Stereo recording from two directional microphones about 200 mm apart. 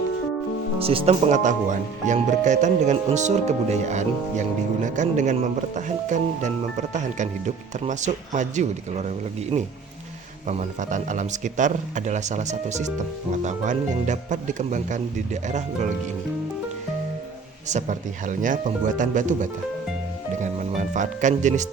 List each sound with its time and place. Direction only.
0.8 s speech: 30° right (ahead or behind)
17.7 s speech: 35° right (ahead or behind)